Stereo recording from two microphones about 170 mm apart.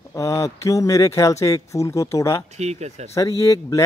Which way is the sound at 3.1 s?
20° left (ahead or behind).